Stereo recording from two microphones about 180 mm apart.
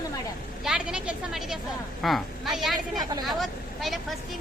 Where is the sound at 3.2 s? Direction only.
Centre (ahead or behind).